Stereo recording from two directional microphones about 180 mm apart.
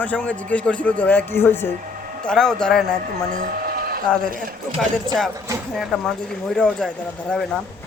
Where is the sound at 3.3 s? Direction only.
50° right (ahead or behind).